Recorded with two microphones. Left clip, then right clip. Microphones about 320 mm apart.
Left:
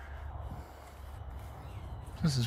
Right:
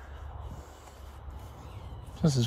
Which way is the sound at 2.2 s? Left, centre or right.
Centre.